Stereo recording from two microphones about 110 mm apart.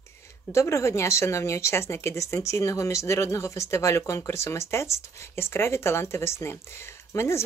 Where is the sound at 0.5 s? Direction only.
25° left (ahead or behind).